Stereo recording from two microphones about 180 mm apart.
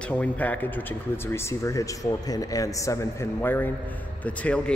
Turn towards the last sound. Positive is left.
turn(degrees=5)  # may be behind; listen again after turning